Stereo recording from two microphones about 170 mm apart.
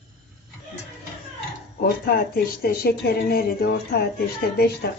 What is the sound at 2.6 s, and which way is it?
Speech, 65° left (ahead or behind).